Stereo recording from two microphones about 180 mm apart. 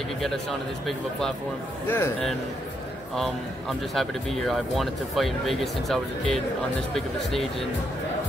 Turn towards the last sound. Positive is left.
turn(degrees=0)  # may be behind; listen again after turning